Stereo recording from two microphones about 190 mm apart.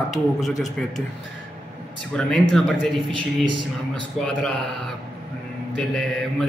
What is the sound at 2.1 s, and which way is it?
Mantra, centre (ahead or behind).